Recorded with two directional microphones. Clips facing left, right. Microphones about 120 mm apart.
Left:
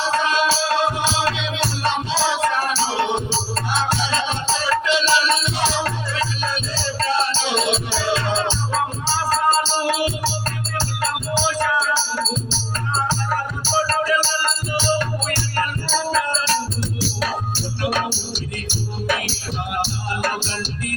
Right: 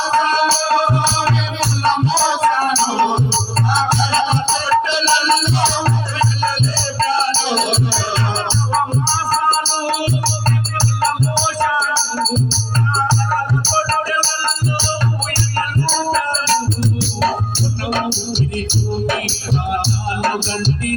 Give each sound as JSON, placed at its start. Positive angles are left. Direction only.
{"t": 0.1, "sound": "music", "side_deg": -35}
{"t": 19.8, "sound": "music", "side_deg": -30}